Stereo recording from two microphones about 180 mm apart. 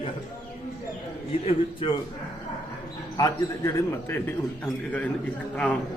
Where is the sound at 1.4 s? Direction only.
30° left (ahead or behind).